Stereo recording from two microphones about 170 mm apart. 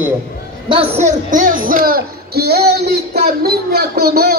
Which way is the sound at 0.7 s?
35° right (ahead or behind).